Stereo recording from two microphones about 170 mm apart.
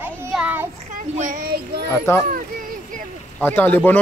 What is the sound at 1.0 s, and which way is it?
Speech, 50° right (ahead or behind).